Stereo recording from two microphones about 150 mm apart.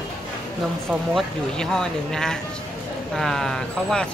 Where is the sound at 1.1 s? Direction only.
5° left (ahead or behind).